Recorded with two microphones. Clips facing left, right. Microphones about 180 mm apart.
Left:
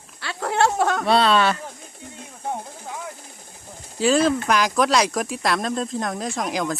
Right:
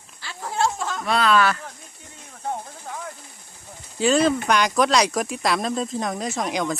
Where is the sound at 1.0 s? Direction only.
30° left (ahead or behind).